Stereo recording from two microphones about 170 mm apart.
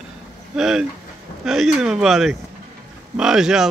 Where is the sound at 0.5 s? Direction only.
Centre (ahead or behind).